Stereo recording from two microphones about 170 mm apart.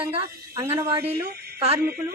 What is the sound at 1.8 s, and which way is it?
Speech, 65° right (ahead or behind).